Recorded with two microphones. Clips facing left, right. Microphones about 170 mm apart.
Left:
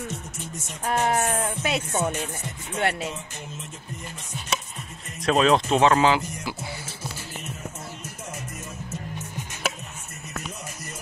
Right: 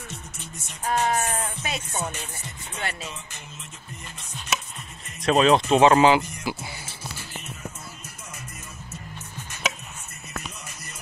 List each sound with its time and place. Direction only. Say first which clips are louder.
0.1 s music: left 5 dB; 45° left (ahead or behind)
1.5 s speech: left 6 dB; 65° left (ahead or behind)
5.2 s speech: right 1 dB; centre (ahead or behind)
9.1 s chopping: left 4 dB; 15° left (ahead or behind)